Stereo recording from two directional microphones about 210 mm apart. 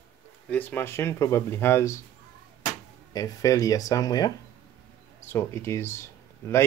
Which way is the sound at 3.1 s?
15° left (ahead or behind).